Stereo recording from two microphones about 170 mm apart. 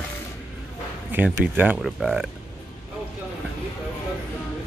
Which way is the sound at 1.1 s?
10° right (ahead or behind).